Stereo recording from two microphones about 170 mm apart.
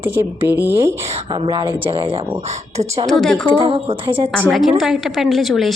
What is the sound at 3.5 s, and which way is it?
Speech, 30° right (ahead or behind).